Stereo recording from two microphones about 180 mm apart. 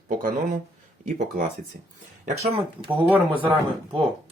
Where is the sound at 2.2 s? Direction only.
40° right (ahead or behind).